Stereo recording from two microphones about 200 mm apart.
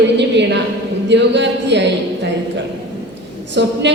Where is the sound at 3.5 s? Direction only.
60° right (ahead or behind).